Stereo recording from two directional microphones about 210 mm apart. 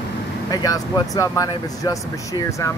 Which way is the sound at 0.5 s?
15° left (ahead or behind).